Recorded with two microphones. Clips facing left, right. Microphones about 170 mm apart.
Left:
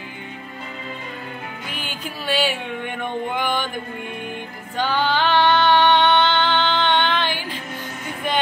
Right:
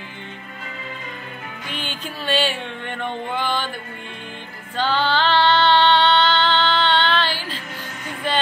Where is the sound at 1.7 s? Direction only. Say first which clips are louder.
Right 3 dB; 10° left (ahead or behind).